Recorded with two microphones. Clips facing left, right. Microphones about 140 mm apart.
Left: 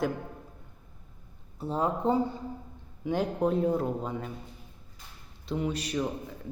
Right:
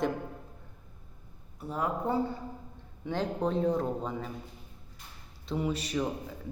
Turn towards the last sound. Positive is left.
turn(degrees=0)  # may be behind; listen again after turning